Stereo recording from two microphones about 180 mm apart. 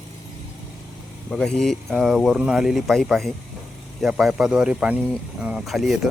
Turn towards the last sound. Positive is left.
turn(degrees=0)  # may be behind; listen again after turning